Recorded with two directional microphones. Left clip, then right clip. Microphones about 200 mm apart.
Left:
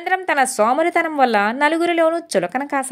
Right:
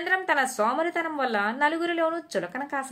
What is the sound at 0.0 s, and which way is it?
A woman's voice, 40° left (ahead or behind).